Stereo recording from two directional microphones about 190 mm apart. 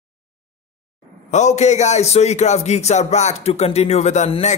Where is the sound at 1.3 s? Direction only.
35° left (ahead or behind).